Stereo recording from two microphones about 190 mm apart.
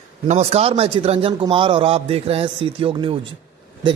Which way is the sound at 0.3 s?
35° right (ahead or behind).